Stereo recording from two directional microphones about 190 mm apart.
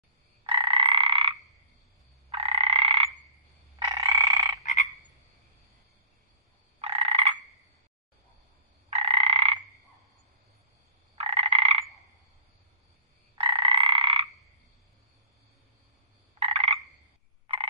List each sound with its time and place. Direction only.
0.4 s croak: 25° right (ahead or behind)
2.2 s frog: 30° right (ahead or behind)
3.8 s frog: 20° right (ahead or behind)
6.8 s frog: 30° right (ahead or behind)
8.9 s frog: 35° right (ahead or behind)
11.1 s frog: 35° right (ahead or behind)
13.4 s frog: 25° right (ahead or behind)
16.3 s frog: 35° right (ahead or behind)